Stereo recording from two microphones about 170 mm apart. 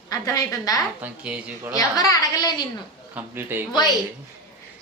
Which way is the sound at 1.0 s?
5° right (ahead or behind).